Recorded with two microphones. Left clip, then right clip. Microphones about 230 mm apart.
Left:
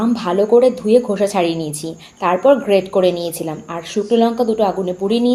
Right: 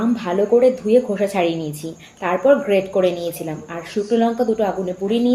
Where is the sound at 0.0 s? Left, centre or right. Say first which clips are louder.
Left 3 dB; left.